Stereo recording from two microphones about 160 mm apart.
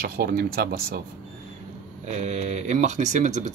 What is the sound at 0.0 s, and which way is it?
Speech, 65° right (ahead or behind).